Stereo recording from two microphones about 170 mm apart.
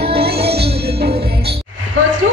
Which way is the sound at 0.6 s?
70° right (ahead or behind).